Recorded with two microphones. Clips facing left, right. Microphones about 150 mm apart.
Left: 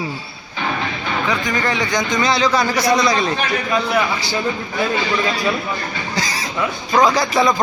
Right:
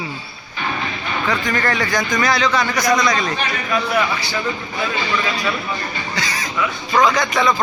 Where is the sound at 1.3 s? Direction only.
15° left (ahead or behind); by 3.3 s 30° left (ahead or behind).